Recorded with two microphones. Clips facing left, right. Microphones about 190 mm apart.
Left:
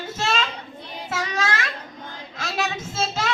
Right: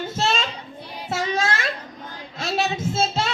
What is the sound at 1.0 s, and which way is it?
Child singing, 30° right (ahead or behind).